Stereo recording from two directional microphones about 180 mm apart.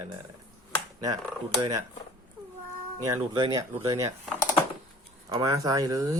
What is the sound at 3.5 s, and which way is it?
Speech, 20° right (ahead or behind).